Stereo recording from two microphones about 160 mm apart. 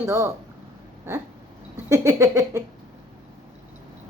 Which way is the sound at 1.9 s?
20° right (ahead or behind).